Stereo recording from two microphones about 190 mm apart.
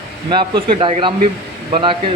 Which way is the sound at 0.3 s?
25° right (ahead or behind).